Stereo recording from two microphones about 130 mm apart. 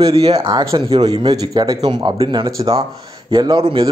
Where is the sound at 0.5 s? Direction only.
30° right (ahead or behind).